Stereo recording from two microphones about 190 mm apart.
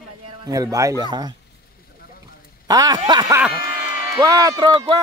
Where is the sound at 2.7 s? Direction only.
20° right (ahead or behind).